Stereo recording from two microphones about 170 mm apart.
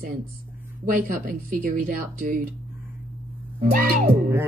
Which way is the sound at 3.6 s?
50° right (ahead or behind).